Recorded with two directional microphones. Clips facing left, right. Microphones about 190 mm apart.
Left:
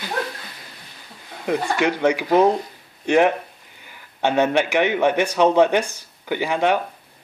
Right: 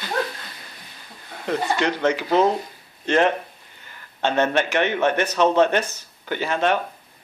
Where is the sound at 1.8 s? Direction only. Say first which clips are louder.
Left 2 dB; 15° left (ahead or behind).